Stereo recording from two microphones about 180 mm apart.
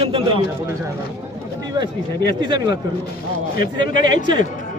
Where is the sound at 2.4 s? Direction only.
25° right (ahead or behind).